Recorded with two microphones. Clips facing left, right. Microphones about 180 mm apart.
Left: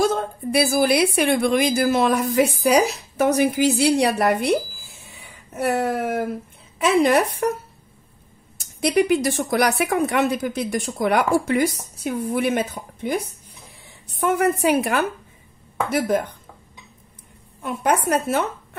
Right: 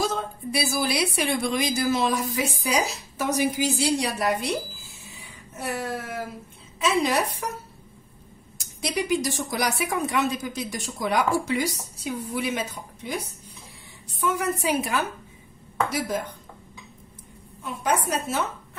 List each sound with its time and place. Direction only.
0.0 s speech: 55° left (ahead or behind)
5.0 s a sound: 60° left (ahead or behind)
6.8 s speech: 55° left (ahead or behind)
8.5 s speech: 55° left (ahead or behind)
14.2 s speech: 60° left (ahead or behind)
17.6 s speech: 60° left (ahead or behind)